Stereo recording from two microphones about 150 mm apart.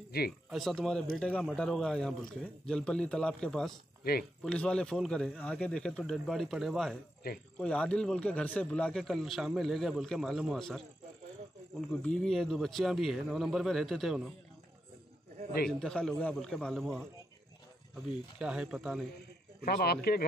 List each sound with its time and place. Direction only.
0.1 s speech: 90° left
0.5 s a man's voice: centre (ahead or behind)
4.0 s speech: 90° left
4.4 s a man's voice: 5° left (ahead or behind)
15.8 s a man's voice: 5° left (ahead or behind)
18.4 s a man's voice: 5° right (ahead or behind)
19.6 s speech: 90° left